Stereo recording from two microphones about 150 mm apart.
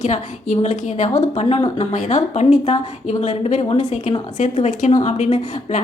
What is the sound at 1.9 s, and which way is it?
A woman's voice, 55° left (ahead or behind).